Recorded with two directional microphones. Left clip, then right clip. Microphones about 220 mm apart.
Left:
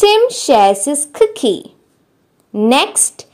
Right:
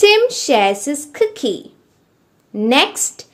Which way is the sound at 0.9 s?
25° left (ahead or behind).